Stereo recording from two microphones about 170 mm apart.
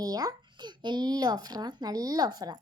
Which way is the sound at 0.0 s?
20° right (ahead or behind).